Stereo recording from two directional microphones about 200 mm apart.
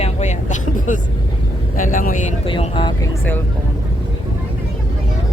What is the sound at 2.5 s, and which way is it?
Speech, 25° left (ahead or behind).